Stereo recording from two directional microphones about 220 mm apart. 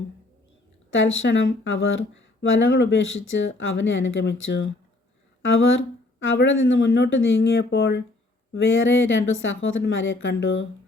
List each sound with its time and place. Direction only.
0.9 s speech: 60° left (ahead or behind)